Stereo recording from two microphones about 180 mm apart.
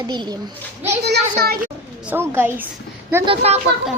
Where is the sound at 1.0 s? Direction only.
65° right (ahead or behind).